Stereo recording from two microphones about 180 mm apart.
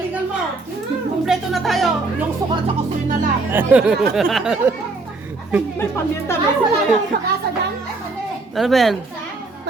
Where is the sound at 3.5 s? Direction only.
5° right (ahead or behind).